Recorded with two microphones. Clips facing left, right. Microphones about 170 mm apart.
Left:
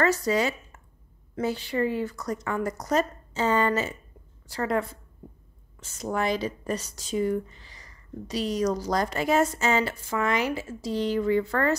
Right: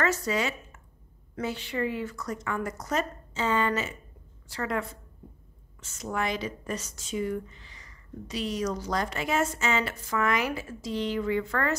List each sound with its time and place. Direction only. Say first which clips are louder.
0.0 s speech: left 4 dB; 35° left (ahead or behind)